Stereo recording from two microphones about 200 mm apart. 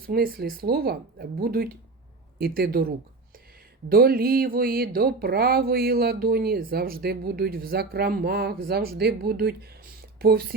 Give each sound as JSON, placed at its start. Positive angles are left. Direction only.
{"t": 0.1, "sound": "speech", "side_deg": -50}